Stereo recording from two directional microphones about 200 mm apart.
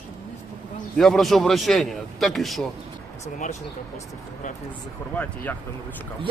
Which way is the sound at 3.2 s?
40° left (ahead or behind).